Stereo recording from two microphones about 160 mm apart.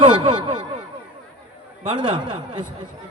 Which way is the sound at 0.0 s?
30° right (ahead or behind).